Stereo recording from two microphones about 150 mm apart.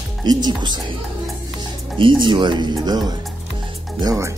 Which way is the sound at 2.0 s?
35° right (ahead or behind).